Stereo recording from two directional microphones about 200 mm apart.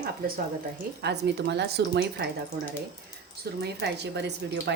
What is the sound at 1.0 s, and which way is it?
A woman's voice, 55° right (ahead or behind).